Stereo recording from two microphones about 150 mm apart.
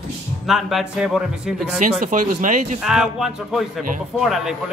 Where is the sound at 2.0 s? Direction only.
60° right (ahead or behind).